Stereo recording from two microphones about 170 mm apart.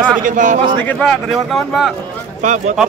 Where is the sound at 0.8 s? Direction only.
5° left (ahead or behind).